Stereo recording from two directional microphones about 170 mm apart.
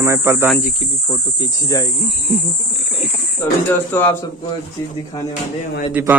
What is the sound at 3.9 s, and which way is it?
Speech, 10° left (ahead or behind).